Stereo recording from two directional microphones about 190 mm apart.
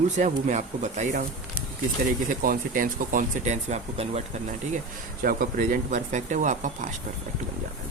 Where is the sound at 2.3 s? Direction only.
45° right (ahead or behind).